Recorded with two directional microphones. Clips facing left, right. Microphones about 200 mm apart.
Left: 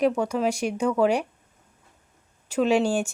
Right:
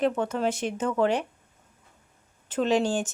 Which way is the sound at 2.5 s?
10° left (ahead or behind).